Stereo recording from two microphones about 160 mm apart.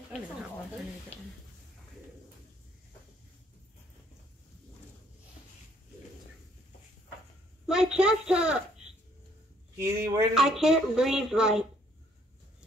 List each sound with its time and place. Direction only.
1.1 s speech: 40° left (ahead or behind)
7.6 s a child's voice: 5° right (ahead or behind)
9.8 s speech: 20° right (ahead or behind)
10.3 s speech: centre (ahead or behind)